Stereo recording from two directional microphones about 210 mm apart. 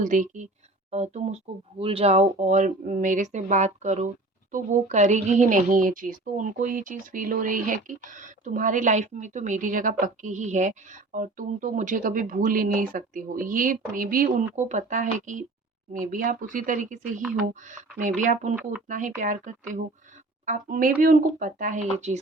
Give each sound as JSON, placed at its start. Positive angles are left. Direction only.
{"t": 0.0, "sound": "a woman's voice", "side_deg": -35}